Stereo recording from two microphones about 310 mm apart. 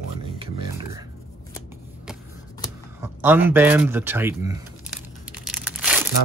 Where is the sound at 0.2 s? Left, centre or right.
Centre.